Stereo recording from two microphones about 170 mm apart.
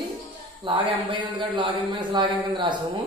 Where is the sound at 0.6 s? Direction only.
30° right (ahead or behind).